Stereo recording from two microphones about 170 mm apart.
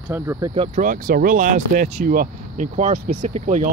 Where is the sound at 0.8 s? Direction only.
55° right (ahead or behind).